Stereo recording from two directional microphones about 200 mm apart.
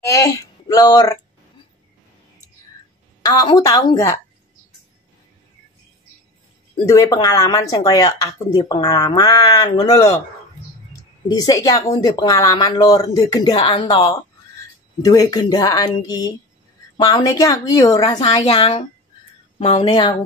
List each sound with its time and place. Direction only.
0.0 s speech: 15° left (ahead or behind)
3.2 s a woman's voice: 20° left (ahead or behind)
6.9 s a woman's voice: 15° left (ahead or behind)